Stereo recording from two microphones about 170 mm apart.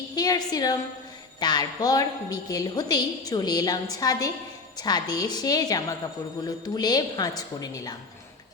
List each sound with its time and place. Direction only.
0.2 s a woman's voice: 20° left (ahead or behind)